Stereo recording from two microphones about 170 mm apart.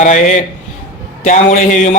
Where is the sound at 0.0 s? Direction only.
45° left (ahead or behind).